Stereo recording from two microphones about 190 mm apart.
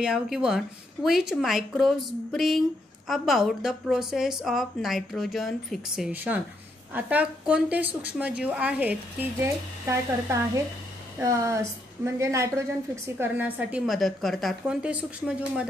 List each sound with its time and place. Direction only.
0.0 s a woman's voice: 5° right (ahead or behind)